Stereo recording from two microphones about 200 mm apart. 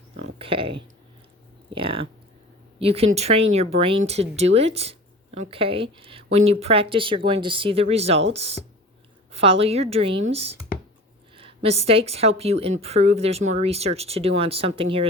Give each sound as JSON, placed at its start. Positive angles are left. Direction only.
{"t": 0.3, "sound": "speech", "side_deg": -25}